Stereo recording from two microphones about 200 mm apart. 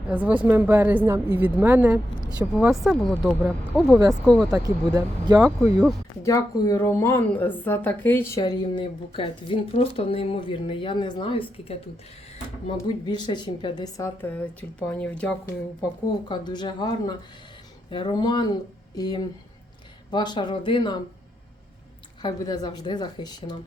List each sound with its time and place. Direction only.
0.1 s a woman's voice: 5° right (ahead or behind)
4.4 s speech: 20° right (ahead or behind)
6.2 s speech: 15° left (ahead or behind)
16.3 s speech: 20° left (ahead or behind)
22.2 s speech: 20° left (ahead or behind)